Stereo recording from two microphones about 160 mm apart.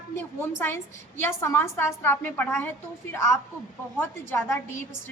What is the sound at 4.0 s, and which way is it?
Speech, 15° left (ahead or behind).